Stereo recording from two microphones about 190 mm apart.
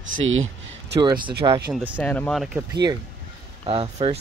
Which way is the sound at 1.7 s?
5° right (ahead or behind).